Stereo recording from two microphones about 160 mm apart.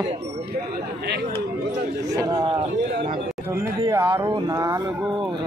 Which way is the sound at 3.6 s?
15° right (ahead or behind).